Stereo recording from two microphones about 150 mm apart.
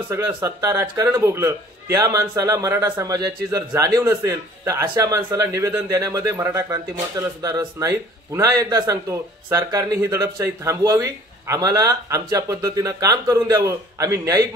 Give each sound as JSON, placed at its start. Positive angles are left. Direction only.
{"t": 0.1, "sound": "speech", "side_deg": -20}